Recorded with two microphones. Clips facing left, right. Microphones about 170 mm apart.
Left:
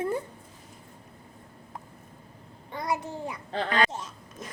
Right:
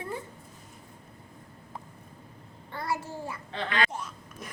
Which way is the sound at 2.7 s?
15° left (ahead or behind).